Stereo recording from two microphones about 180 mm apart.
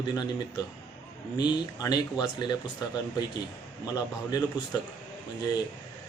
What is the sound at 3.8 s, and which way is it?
Speech, 20° left (ahead or behind).